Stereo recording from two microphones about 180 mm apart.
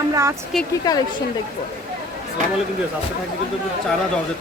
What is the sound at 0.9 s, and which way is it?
Speech, 20° left (ahead or behind).